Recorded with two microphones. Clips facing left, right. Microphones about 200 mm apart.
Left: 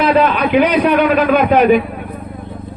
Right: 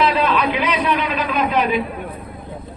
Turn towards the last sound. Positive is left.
turn(degrees=55)  # may be behind; listen again after turning